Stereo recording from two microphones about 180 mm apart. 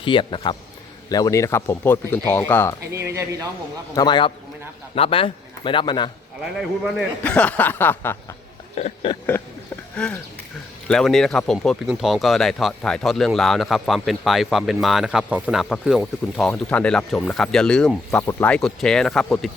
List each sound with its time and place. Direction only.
0.0 s a man's voice: 25° left (ahead or behind); by 2.7 s 10° left (ahead or behind)
2.9 s speech: 15° right (ahead or behind)
3.9 s a man's voice: 25° left (ahead or behind)
7.2 s speech: 5° left (ahead or behind)
8.7 s a sound: 35° left (ahead or behind)
9.9 s speech: 5° left (ahead or behind)